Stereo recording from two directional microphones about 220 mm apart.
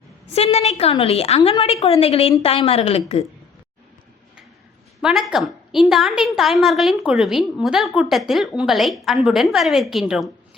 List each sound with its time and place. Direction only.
0.3 s a woman's voice: 30° left (ahead or behind)
5.0 s a woman's voice: centre (ahead or behind)